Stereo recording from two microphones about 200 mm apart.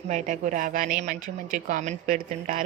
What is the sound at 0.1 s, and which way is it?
A woman's voice, 40° right (ahead or behind).